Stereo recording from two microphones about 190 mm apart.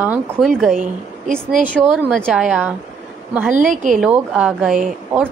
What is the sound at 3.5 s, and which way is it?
Speech, 40° right (ahead or behind).